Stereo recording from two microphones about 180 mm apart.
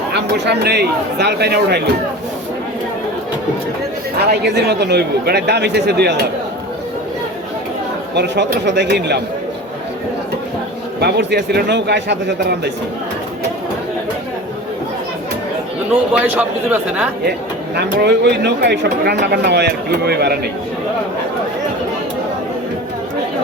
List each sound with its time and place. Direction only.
0.1 s speech: 70° right (ahead or behind)
4.3 s speech: 70° right (ahead or behind)
8.1 s speech: 70° right (ahead or behind)
11.0 s speech: 70° right (ahead or behind)
15.9 s a man's voice: 10° right (ahead or behind)
17.7 s speech: 70° right (ahead or behind)